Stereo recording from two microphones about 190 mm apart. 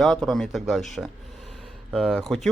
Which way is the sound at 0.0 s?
Centre (ahead or behind).